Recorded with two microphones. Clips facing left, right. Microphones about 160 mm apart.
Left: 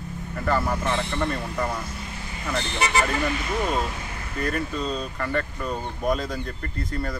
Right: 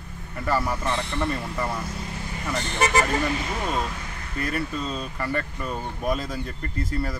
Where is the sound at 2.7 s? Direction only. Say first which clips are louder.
Right 3 dB; 45° right (ahead or behind).